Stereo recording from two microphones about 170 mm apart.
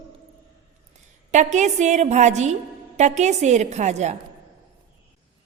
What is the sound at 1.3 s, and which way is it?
A woman's voice, 45° right (ahead or behind).